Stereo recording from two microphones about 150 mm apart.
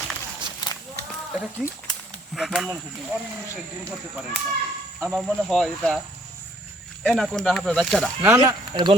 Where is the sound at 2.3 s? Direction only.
Centre (ahead or behind).